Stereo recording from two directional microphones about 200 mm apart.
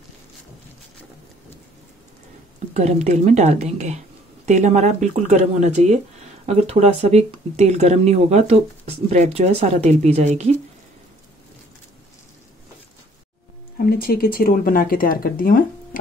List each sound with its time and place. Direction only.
2.7 s speech: 35° right (ahead or behind)
13.8 s speech: 50° left (ahead or behind)